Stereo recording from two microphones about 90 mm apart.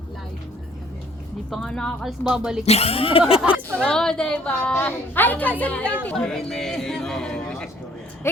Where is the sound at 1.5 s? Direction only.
10° left (ahead or behind).